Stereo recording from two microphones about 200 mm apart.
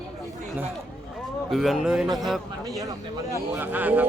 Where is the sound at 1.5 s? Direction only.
Centre (ahead or behind).